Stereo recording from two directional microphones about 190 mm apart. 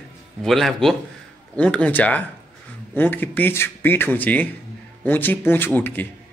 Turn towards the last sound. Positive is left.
turn(degrees=10)  # may be behind; listen again after turning